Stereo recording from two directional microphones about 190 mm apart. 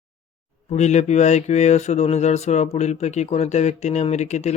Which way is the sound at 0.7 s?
35° left (ahead or behind).